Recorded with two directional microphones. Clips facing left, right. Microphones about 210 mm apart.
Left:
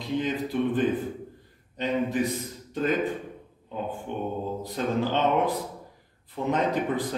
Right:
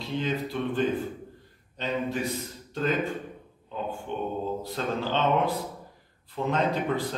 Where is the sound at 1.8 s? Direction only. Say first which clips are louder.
Left 4 dB; 15° left (ahead or behind).